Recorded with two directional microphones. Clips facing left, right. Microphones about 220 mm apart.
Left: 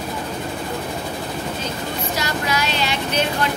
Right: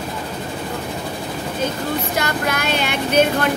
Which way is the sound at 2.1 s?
55° right (ahead or behind).